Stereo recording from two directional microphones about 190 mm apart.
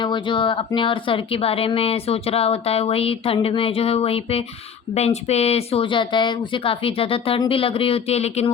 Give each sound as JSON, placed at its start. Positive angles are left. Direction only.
{"t": 0.0, "sound": "speech", "side_deg": 25}